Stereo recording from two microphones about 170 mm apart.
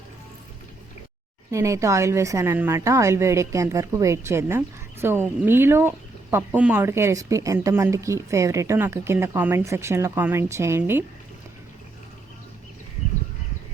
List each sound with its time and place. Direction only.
1.5 s speech: 15° right (ahead or behind)